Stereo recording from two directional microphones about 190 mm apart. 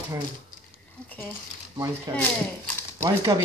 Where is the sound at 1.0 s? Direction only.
10° left (ahead or behind).